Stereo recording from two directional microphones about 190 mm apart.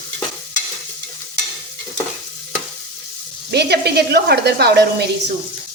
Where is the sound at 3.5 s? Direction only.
60° right (ahead or behind).